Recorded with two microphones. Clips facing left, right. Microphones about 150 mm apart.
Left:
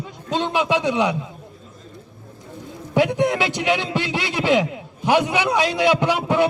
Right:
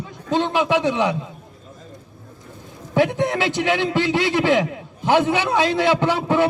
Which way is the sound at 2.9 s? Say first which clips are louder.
Even; 15° left (ahead or behind).